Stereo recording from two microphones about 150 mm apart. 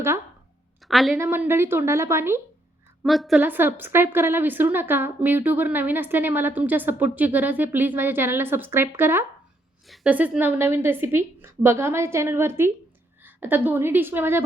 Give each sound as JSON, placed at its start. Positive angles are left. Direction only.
{"t": 0.9, "sound": "a woman's voice", "side_deg": 0}
{"t": 1.1, "sound": "a woman's voice", "side_deg": -15}
{"t": 3.0, "sound": "a woman's voice", "side_deg": 0}
{"t": 3.4, "sound": "a woman's voice", "side_deg": -15}